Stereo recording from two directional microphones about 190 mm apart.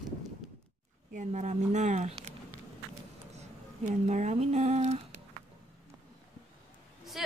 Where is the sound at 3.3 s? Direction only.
40° right (ahead or behind).